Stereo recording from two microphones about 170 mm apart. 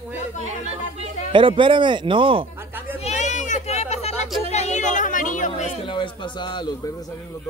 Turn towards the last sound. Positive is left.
turn(degrees=25)  # may be behind; listen again after turning